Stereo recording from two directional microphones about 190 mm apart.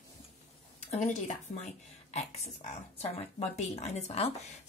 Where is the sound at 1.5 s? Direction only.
40° left (ahead or behind).